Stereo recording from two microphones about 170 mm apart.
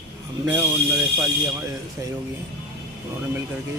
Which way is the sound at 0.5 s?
10° right (ahead or behind).